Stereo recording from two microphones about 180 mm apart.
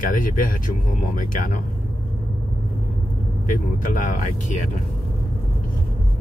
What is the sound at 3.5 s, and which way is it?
Speech, 50° left (ahead or behind).